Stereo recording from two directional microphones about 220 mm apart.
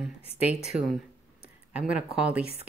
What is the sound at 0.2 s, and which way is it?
Speech, 30° left (ahead or behind).